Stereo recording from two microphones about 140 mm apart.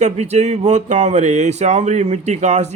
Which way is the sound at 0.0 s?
55° right (ahead or behind).